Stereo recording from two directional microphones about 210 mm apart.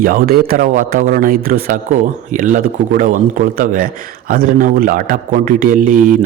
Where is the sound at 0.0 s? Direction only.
45° right (ahead or behind).